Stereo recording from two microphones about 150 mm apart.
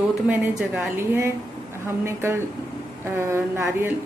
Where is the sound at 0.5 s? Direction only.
15° right (ahead or behind).